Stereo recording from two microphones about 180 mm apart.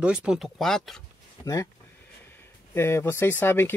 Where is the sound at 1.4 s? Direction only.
20° left (ahead or behind).